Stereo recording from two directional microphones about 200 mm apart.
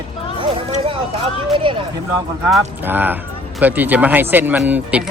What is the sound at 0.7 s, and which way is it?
Speech, 30° right (ahead or behind).